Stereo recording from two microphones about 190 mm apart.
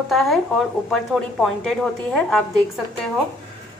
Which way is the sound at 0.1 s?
Centre (ahead or behind).